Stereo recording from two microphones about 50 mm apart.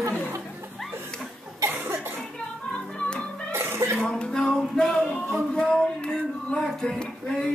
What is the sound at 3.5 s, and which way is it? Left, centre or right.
Music, right.